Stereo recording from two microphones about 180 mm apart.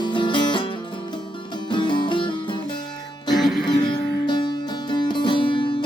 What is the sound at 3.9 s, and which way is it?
Music, 25° left (ahead or behind).